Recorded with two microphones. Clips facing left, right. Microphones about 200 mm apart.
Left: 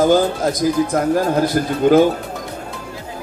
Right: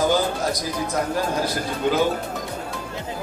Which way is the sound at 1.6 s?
50° left (ahead or behind).